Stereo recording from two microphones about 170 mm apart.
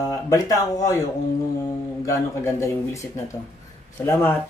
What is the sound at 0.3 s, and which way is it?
Speech, 20° left (ahead or behind).